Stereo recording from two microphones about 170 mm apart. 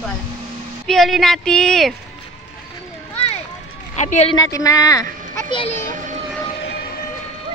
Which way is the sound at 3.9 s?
45° left (ahead or behind).